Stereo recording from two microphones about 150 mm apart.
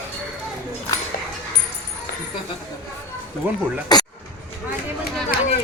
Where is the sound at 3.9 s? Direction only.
25° left (ahead or behind).